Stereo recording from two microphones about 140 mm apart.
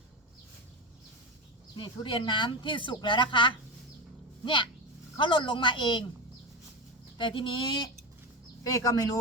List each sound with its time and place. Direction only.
1.7 s speech: 35° left (ahead or behind)
7.2 s speech: 35° left (ahead or behind)
8.6 s speech: 25° left (ahead or behind)